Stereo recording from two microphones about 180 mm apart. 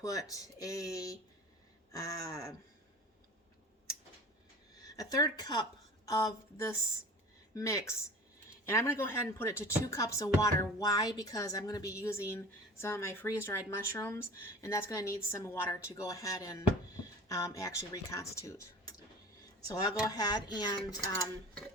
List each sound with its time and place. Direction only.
0.0 s speech: 20° left (ahead or behind)
4.8 s speech: 20° left (ahead or behind)